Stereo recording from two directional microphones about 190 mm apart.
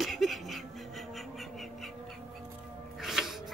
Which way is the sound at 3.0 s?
Centre (ahead or behind).